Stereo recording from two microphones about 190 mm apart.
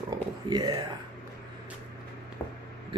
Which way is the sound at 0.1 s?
20° right (ahead or behind).